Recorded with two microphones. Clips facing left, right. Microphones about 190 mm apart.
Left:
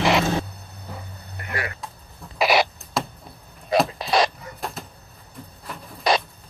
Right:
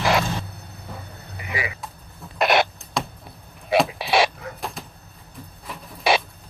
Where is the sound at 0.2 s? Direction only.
60° left (ahead or behind).